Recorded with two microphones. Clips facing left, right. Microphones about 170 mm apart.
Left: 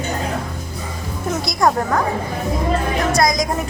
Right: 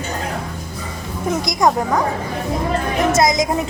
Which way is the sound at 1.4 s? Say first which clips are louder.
Even; 15° right (ahead or behind).